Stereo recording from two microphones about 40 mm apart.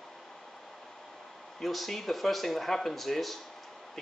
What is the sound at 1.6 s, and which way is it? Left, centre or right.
Speech, centre.